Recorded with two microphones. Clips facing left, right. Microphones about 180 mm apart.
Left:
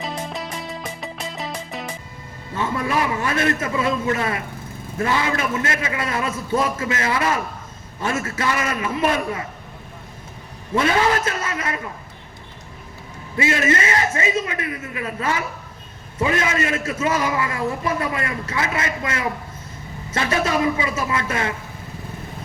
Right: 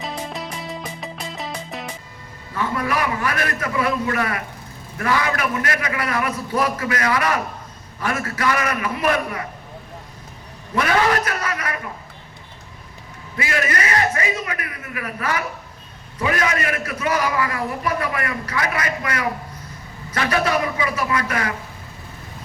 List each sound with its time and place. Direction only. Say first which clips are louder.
0.0 s music: left 1 dB; centre (ahead or behind)
2.6 s a man's voice: even; 25° left (ahead or behind)
10.8 s a man's voice: even; 25° left (ahead or behind)
13.3 s a man's voice: left 4 dB; 25° left (ahead or behind)